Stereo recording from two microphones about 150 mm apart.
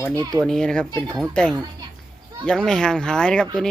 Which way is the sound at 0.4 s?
5° left (ahead or behind).